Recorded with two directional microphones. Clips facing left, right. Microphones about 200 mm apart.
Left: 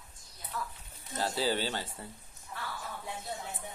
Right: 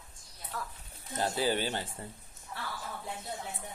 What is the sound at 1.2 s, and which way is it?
Speech, 15° right (ahead or behind).